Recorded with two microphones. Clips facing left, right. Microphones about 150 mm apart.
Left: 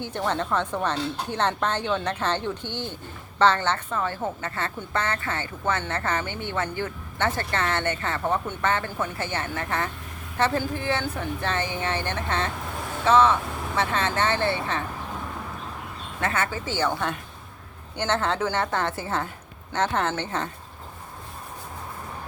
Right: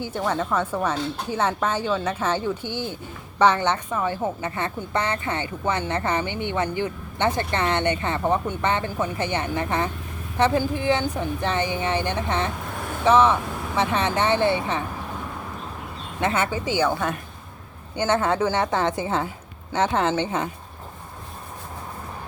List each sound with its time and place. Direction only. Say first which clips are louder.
0.0 s a woman's voice: right 2 dB; 5° right (ahead or behind)
16.2 s a woman's voice: right 4 dB; 20° right (ahead or behind)